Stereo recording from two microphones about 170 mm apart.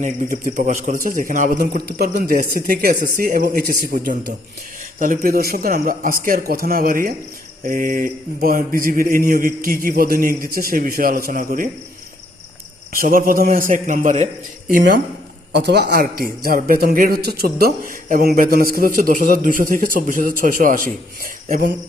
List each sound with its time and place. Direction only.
0.0 s a man's voice: 50° right (ahead or behind)
4.9 s a man's voice: 50° right (ahead or behind)
12.9 s a man's voice: 55° right (ahead or behind)
15.5 s a man's voice: 85° right; by 21.7 s 55° right (ahead or behind)